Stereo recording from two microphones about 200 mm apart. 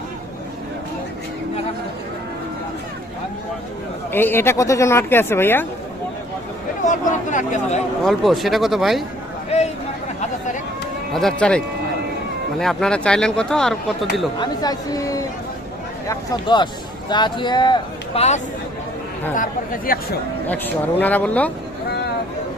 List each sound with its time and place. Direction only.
4.1 s speech: 10° left (ahead or behind)
6.8 s chatter: 40° left (ahead or behind)
8.0 s speech: centre (ahead or behind)
11.1 s speech: centre (ahead or behind)
14.3 s speech: 20° left (ahead or behind)
19.4 s speech: 45° left (ahead or behind)
20.5 s speech: 10° left (ahead or behind)
21.8 s vehicle: 55° left (ahead or behind)